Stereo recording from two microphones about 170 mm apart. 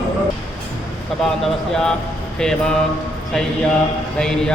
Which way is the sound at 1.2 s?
5° left (ahead or behind).